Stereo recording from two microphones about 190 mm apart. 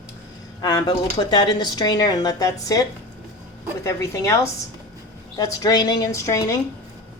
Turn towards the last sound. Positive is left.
turn(degrees=15)  # may be behind; listen again after turning